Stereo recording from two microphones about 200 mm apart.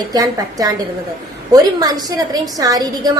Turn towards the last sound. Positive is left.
turn(degrees=-20)  # may be behind; listen again after turning